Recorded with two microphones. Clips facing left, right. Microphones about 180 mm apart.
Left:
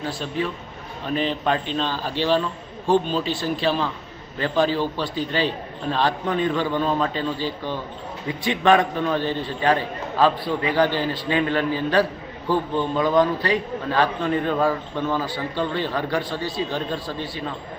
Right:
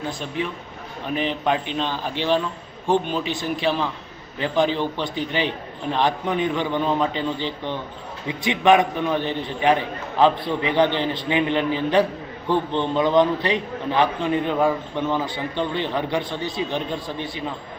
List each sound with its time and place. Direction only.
1.0 s a man's voice: 15° right (ahead or behind)